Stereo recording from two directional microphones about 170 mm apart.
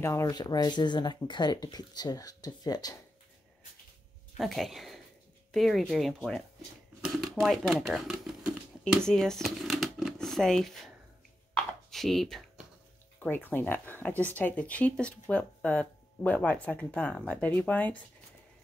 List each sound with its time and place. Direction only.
0.0 s speech: 15° left (ahead or behind)
4.4 s speech: centre (ahead or behind)
11.5 s a sound: centre (ahead or behind)
13.2 s speech: 10° left (ahead or behind)